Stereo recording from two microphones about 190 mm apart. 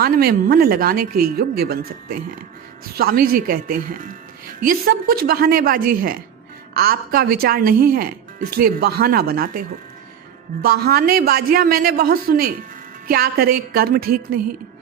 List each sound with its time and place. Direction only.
0.0 s speech: 55° right (ahead or behind)